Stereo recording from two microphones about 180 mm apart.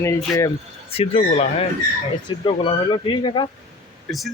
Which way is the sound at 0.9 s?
35° left (ahead or behind).